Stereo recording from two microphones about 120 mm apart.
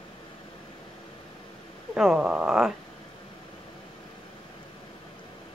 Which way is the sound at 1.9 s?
5° right (ahead or behind).